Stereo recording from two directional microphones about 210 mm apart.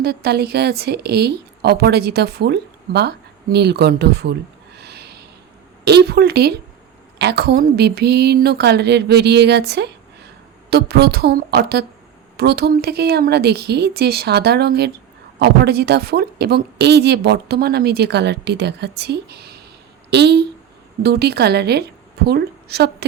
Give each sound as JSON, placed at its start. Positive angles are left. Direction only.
{"t": 0.0, "sound": "a woman's voice", "side_deg": -50}
{"t": 4.8, "sound": "a sound", "side_deg": -50}
{"t": 5.8, "sound": "a woman's voice", "side_deg": -50}